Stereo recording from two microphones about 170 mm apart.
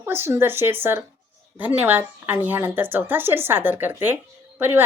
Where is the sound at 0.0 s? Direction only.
15° right (ahead or behind).